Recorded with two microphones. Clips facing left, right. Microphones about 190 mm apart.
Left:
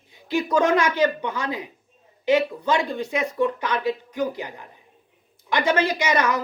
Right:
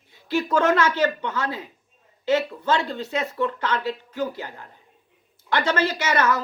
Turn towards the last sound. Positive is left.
turn(degrees=15)  # may be behind; listen again after turning